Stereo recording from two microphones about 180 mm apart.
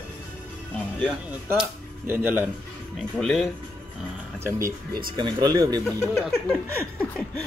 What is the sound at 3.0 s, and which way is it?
Speech, centre (ahead or behind).